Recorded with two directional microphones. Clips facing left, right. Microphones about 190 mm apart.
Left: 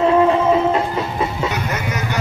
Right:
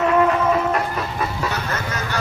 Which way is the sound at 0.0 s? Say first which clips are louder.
Left 3 dB; 25° left (ahead or behind).